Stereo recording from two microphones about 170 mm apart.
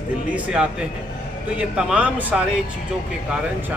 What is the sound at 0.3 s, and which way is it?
A man's voice, 5° right (ahead or behind).